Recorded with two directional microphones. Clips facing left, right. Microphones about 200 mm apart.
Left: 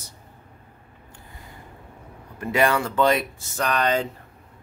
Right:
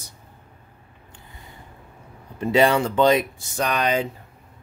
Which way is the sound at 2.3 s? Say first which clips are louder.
Right 3 dB; 20° right (ahead or behind).